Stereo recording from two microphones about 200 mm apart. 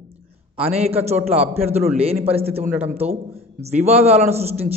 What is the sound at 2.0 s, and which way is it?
Speech, 30° right (ahead or behind).